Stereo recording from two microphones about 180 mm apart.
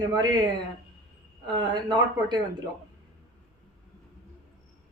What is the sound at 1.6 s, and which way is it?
Speech, 25° right (ahead or behind).